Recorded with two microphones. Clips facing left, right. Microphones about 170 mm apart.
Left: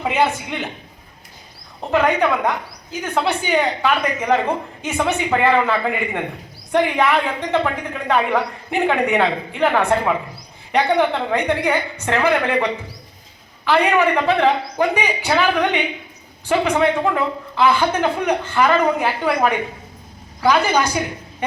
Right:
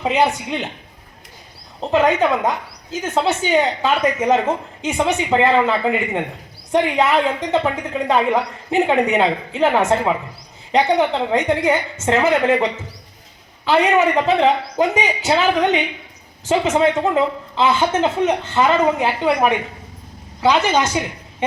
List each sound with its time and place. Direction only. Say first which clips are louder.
0.0 s a man's voice: right 1 dB; 20° right (ahead or behind)
1.8 s a man's voice: right 1 dB; 20° right (ahead or behind)